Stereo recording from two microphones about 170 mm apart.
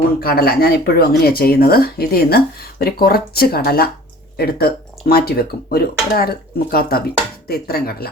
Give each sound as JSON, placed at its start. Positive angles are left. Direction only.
{"t": 0.2, "sound": "speech", "side_deg": 65}